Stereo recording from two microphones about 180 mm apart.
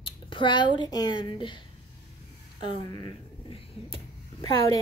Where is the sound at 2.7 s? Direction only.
25° left (ahead or behind).